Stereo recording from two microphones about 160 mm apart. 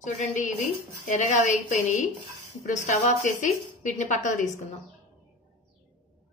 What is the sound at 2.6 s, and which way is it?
Speech, 50° left (ahead or behind).